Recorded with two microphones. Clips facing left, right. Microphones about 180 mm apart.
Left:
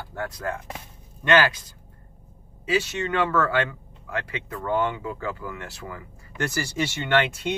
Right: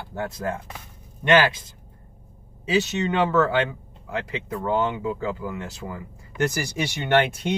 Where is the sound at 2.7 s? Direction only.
20° right (ahead or behind).